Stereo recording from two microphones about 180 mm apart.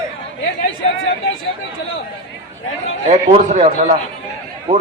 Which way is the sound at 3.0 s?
40° right (ahead or behind).